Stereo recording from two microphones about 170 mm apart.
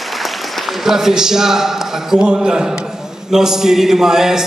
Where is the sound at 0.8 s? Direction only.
5° right (ahead or behind).